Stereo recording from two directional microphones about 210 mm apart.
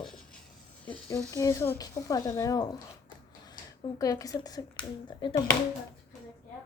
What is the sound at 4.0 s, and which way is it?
A woman's voice, 15° left (ahead or behind).